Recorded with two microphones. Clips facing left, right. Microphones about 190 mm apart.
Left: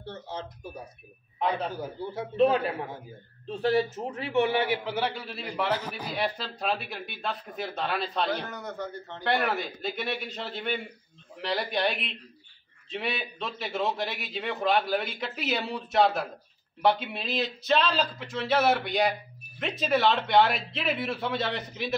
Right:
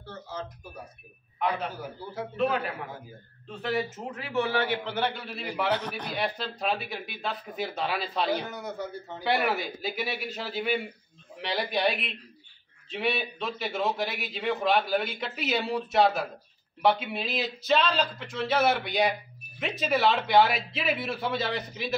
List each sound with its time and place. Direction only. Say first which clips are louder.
3.4 s a man's voice: left 5 dB; 35° left (ahead or behind); by 4.7 s 15° left (ahead or behind)
4.8 s a man's voice: even; 5° left (ahead or behind)